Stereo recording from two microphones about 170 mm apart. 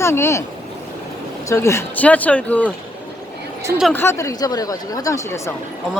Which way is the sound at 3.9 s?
15° left (ahead or behind).